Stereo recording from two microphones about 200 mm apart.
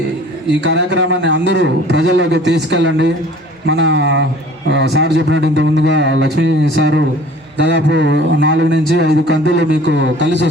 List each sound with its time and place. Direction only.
0.6 s speech: 60° right (ahead or behind)